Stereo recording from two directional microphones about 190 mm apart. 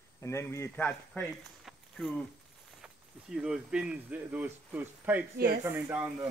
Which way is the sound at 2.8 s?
5° right (ahead or behind).